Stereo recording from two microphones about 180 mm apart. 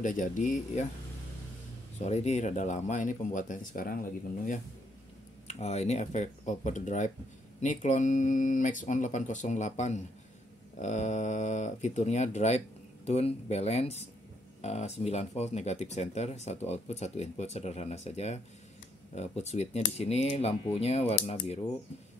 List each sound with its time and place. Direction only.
0.0 s speech: 45° left (ahead or behind)
2.0 s speech: 40° left (ahead or behind)
5.5 s speech: 40° left (ahead or behind)